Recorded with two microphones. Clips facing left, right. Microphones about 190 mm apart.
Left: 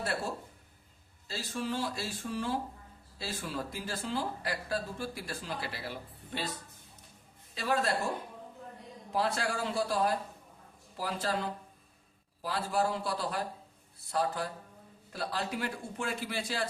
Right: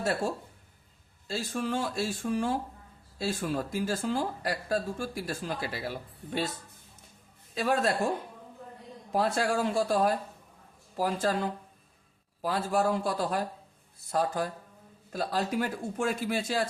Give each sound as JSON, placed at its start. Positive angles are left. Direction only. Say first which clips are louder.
{"t": 0.0, "sound": "speech", "louder": "right 5 dB", "side_deg": -45}
{"t": 1.3, "sound": "speech", "louder": "right 4 dB", "side_deg": -50}
{"t": 7.5, "sound": "speech", "louder": "right 4 dB", "side_deg": -50}
{"t": 9.1, "sound": "speech", "louder": "right 5 dB", "side_deg": -50}